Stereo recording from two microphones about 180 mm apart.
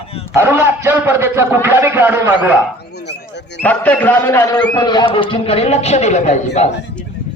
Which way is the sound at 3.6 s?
10° left (ahead or behind).